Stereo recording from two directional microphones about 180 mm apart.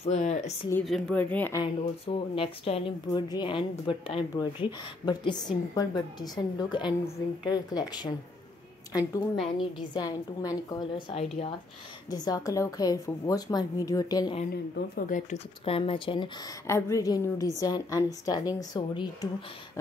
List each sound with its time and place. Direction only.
0.0 s speech: 40° left (ahead or behind)
0.8 s a woman's voice: centre (ahead or behind)
1.6 s a woman's voice: 30° left (ahead or behind)
15.0 s speech: 45° left (ahead or behind); by 16.3 s 30° left (ahead or behind)
16.6 s a woman's voice: 15° left (ahead or behind)